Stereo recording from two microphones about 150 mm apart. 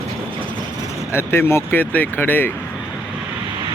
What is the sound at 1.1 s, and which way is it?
Speech, 15° left (ahead or behind).